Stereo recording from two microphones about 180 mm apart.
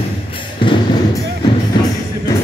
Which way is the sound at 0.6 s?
25° left (ahead or behind).